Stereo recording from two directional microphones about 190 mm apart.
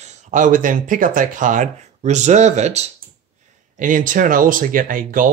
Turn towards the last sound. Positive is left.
turn(degrees=-45)  # may be behind; listen again after turning